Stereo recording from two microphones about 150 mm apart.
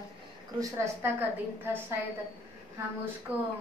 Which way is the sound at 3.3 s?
10° right (ahead or behind).